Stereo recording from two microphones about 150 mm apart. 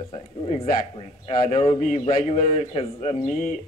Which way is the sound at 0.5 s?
45° left (ahead or behind).